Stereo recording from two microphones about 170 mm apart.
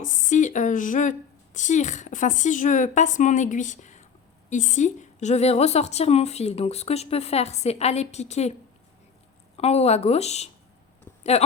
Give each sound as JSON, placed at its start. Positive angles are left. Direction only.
{"t": 0.0, "sound": "a woman's voice", "side_deg": 50}
{"t": 9.6, "sound": "a woman's voice", "side_deg": 40}